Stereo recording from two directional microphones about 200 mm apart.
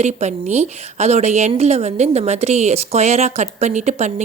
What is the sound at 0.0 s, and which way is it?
A woman's voice, 35° right (ahead or behind).